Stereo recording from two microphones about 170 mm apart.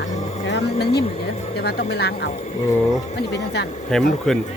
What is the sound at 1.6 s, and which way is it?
Speech, 70° left (ahead or behind).